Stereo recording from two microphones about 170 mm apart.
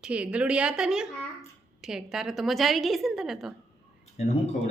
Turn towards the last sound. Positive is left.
turn(degrees=40)  # may be behind; listen again after turning